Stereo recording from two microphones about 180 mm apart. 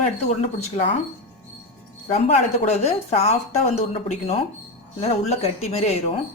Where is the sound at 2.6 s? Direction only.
40° left (ahead or behind).